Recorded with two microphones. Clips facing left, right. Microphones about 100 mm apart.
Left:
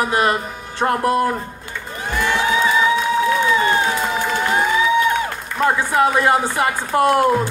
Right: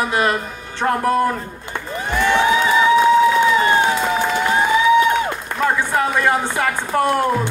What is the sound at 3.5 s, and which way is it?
Run, 25° right (ahead or behind).